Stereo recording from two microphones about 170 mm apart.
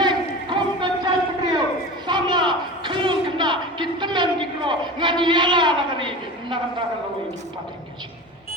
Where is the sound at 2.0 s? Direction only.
25° right (ahead or behind).